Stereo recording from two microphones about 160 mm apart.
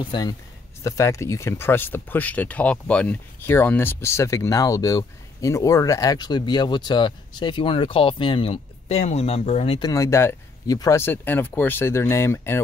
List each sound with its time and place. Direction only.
0.0 s speech: 25° left (ahead or behind)
9.8 s speech: 20° left (ahead or behind)